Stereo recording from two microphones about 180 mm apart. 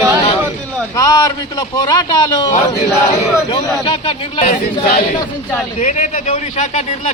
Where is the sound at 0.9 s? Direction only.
20° left (ahead or behind).